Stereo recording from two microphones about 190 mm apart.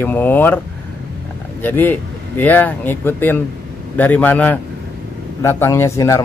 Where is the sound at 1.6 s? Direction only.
10° left (ahead or behind).